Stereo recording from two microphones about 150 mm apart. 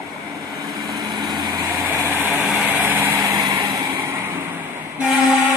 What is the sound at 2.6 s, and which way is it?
Vehicle, 10° right (ahead or behind).